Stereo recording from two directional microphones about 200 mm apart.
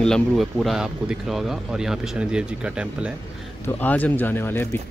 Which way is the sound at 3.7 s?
10° left (ahead or behind).